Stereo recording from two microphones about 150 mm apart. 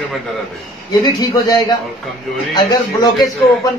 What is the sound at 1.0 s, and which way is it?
Speech, 30° left (ahead or behind).